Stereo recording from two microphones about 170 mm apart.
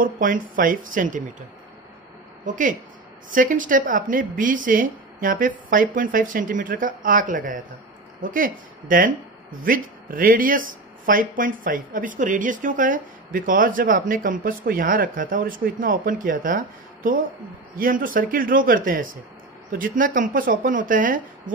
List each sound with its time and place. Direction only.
0.0 s speech: 55° right (ahead or behind)
2.4 s a man's voice: 50° right (ahead or behind)